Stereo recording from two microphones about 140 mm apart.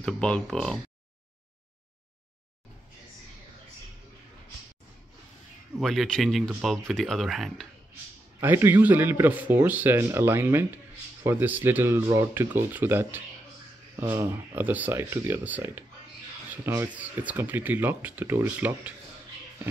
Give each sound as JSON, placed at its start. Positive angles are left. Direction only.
{"t": 0.0, "sound": "speech", "side_deg": 5}
{"t": 5.8, "sound": "speech", "side_deg": 0}
{"t": 8.4, "sound": "speech", "side_deg": -15}
{"t": 14.5, "sound": "speech", "side_deg": -10}